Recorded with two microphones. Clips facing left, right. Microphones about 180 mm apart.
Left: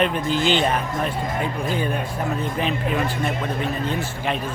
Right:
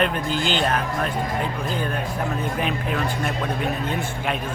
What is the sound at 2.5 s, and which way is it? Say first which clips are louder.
A man's voice: left 2 dB; centre (ahead or behind).